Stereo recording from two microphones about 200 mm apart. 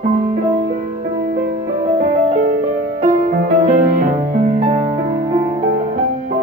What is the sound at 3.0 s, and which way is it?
Music, 40° right (ahead or behind).